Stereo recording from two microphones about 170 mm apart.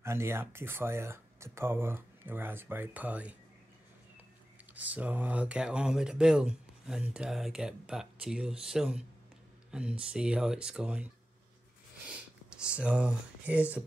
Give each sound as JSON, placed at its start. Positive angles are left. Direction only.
{"t": 0.0, "sound": "speech", "side_deg": -15}
{"t": 4.7, "sound": "speech", "side_deg": -10}
{"t": 12.1, "sound": "speech", "side_deg": -5}